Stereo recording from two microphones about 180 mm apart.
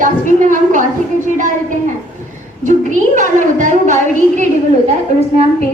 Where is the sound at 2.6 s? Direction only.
45° right (ahead or behind).